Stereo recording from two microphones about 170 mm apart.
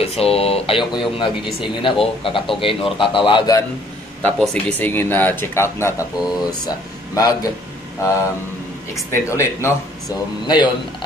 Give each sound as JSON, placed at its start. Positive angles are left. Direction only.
{"t": 0.0, "sound": "a man's voice", "side_deg": 35}
{"t": 4.2, "sound": "a man's voice", "side_deg": 10}
{"t": 8.9, "sound": "a man's voice", "side_deg": 15}